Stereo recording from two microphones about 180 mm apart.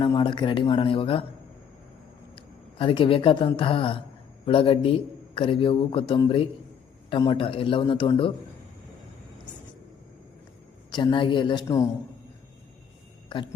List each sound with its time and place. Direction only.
0.0 s speech: 25° left (ahead or behind)
2.3 s a man's voice: 30° left (ahead or behind)
10.9 s a man's voice: 25° left (ahead or behind)